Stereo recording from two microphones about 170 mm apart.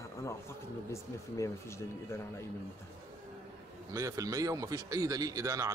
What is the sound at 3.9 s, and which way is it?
Speech, 20° right (ahead or behind).